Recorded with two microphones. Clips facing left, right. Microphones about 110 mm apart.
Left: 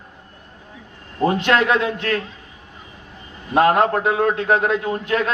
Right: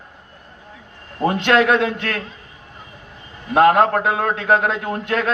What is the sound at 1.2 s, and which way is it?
Speech, 60° right (ahead or behind).